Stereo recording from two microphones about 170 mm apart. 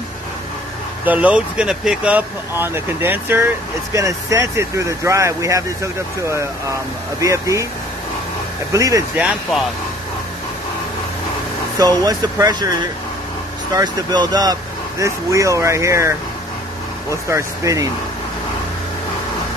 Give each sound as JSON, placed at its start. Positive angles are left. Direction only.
{"t": 1.0, "sound": "speech", "side_deg": -10}
{"t": 8.7, "sound": "speech", "side_deg": -20}
{"t": 11.8, "sound": "speech", "side_deg": -20}